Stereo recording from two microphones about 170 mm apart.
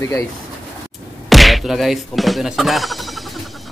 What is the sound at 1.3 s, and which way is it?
Speech, centre (ahead or behind).